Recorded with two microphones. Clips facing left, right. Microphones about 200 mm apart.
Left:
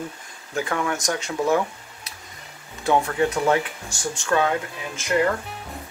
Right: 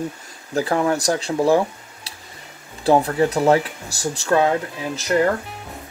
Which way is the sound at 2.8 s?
35° right (ahead or behind).